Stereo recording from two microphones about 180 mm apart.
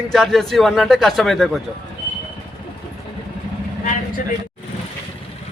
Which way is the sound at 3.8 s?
50° left (ahead or behind).